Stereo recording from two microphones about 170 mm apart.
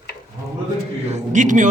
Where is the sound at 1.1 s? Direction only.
45° right (ahead or behind).